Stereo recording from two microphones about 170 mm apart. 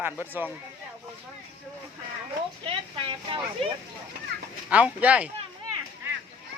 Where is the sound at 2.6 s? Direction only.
30° right (ahead or behind).